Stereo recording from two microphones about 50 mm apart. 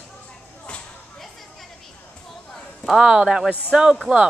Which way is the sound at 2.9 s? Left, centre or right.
Centre.